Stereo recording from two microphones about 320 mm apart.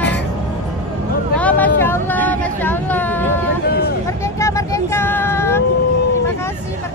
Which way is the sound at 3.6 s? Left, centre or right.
Left.